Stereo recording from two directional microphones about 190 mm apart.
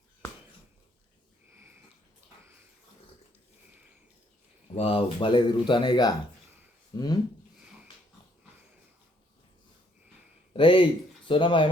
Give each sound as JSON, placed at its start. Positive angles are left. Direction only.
{"t": 1.5, "sound": "sniff", "side_deg": -15}
{"t": 4.7, "sound": "speech", "side_deg": 30}
{"t": 10.5, "sound": "speech", "side_deg": 25}